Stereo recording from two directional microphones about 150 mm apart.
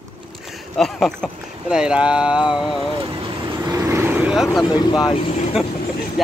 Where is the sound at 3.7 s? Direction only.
20° right (ahead or behind).